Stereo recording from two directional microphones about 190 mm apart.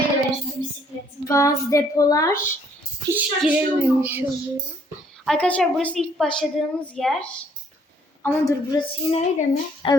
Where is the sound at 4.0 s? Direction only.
10° right (ahead or behind).